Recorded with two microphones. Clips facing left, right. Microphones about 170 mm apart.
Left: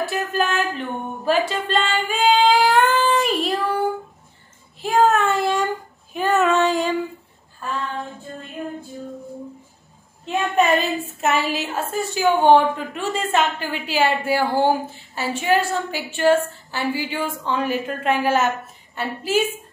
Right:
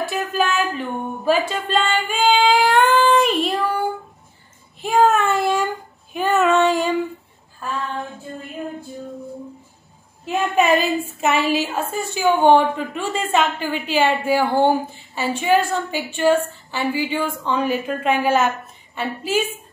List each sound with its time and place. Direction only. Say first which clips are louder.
0.0 s a sound: right 1 dB; centre (ahead or behind)
4.8 s child singing: right 1 dB; centre (ahead or behind)
6.1 s female singing: right 1 dB; centre (ahead or behind)
10.2 s a woman's voice: right 1 dB; 5° right (ahead or behind)